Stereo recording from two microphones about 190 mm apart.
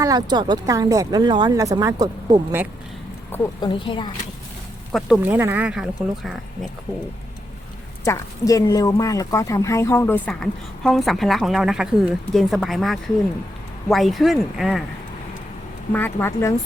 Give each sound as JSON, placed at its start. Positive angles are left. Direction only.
{"t": 0.0, "sound": "speech", "side_deg": -20}
{"t": 3.6, "sound": "speech", "side_deg": 25}
{"t": 4.9, "sound": "a woman's voice", "side_deg": 0}
{"t": 8.0, "sound": "a woman's voice", "side_deg": 15}
{"t": 15.9, "sound": "speech", "side_deg": 10}